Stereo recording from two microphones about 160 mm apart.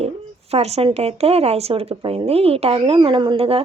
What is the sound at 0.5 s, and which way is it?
Speech, 40° right (ahead or behind).